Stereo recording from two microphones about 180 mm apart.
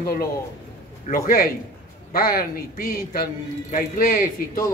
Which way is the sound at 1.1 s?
50° left (ahead or behind).